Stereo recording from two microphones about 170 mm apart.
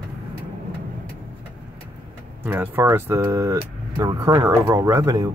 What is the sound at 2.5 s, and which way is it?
Speech, 15° right (ahead or behind).